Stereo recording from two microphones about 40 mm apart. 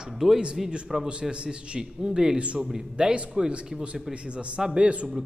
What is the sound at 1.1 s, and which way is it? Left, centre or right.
Speech, right.